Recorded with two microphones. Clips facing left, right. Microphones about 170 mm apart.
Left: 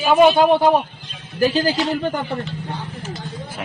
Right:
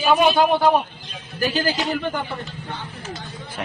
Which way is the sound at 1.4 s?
30° left (ahead or behind).